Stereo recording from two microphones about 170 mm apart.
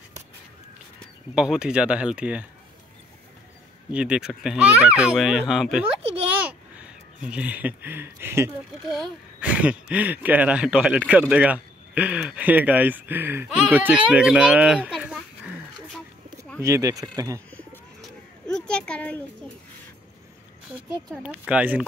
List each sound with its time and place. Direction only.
0.9 s speech: 5° right (ahead or behind)
3.9 s speech: 5° right (ahead or behind)
8.8 s speech: centre (ahead or behind)
16.6 s speech: 20° right (ahead or behind)
17.5 s bird: 5° left (ahead or behind)
21.2 s speech: 10° right (ahead or behind)